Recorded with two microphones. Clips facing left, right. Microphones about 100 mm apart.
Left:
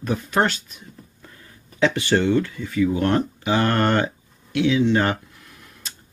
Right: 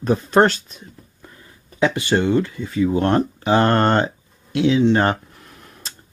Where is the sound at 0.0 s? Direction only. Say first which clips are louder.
Right 6 dB; 35° right (ahead or behind).